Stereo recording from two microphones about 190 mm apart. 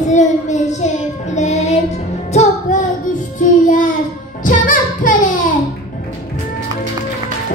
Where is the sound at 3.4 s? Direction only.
40° left (ahead or behind).